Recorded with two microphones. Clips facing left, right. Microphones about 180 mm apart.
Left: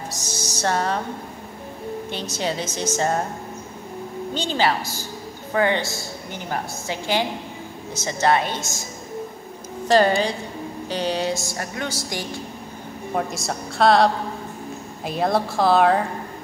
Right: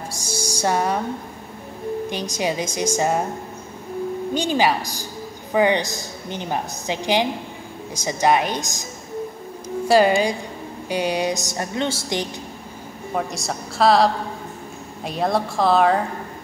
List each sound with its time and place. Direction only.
0.1 s music: 10° right (ahead or behind)
2.0 s a woman's voice: 15° right (ahead or behind)
4.3 s a woman's voice: 15° right (ahead or behind)
9.8 s a woman's voice: 10° right (ahead or behind)
13.1 s a woman's voice: centre (ahead or behind)